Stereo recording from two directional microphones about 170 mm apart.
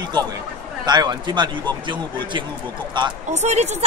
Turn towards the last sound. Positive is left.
turn(degrees=-40)  # may be behind; listen again after turning